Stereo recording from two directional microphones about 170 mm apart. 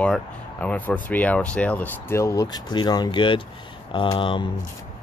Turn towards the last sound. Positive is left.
turn(degrees=30)  # may be behind; listen again after turning